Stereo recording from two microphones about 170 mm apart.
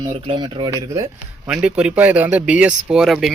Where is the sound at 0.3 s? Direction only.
25° right (ahead or behind).